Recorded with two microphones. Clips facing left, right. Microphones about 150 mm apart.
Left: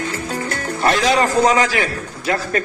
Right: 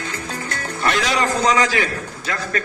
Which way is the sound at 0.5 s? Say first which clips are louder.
Left 3 dB; 35° left (ahead or behind).